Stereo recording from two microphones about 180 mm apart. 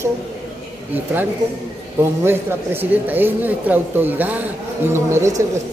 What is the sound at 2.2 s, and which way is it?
Speech, 15° right (ahead or behind).